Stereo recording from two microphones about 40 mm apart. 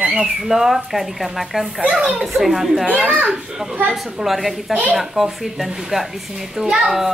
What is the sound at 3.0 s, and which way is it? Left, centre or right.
Speech, right.